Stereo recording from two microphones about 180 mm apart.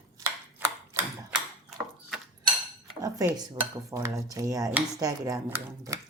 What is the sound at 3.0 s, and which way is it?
Speech, 20° right (ahead or behind).